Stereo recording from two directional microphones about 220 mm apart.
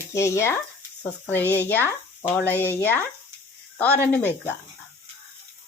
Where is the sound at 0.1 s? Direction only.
15° left (ahead or behind).